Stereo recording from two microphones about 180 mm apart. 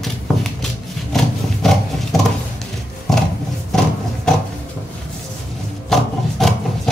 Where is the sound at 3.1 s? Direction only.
Centre (ahead or behind).